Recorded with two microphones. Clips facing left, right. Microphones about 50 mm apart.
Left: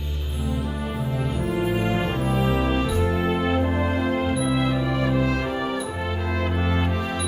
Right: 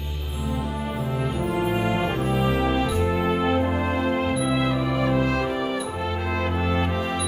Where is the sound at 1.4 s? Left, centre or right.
Centre.